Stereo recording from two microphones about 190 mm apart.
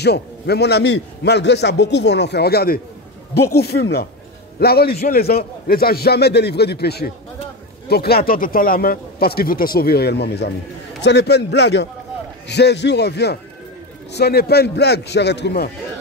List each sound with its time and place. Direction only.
0.0 s a man's voice: 60° left (ahead or behind)